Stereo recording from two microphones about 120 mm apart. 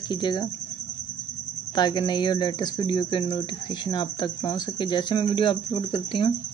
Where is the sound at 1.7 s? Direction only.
35° left (ahead or behind).